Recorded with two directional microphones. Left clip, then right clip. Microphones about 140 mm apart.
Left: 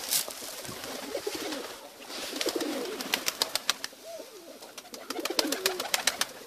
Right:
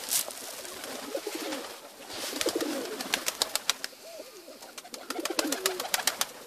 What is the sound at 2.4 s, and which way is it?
Bird, 20° right (ahead or behind).